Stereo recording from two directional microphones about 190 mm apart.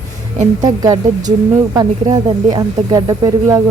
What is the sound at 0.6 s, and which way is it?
Speech, 20° right (ahead or behind).